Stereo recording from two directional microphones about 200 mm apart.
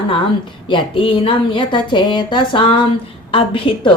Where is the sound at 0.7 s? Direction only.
25° left (ahead or behind).